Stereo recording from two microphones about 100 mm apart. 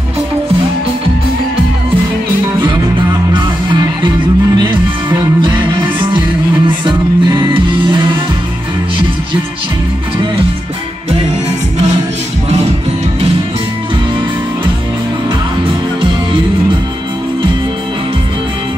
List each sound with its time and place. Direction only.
5.4 s music: 55° right (ahead or behind)
6.9 s music: 50° right (ahead or behind)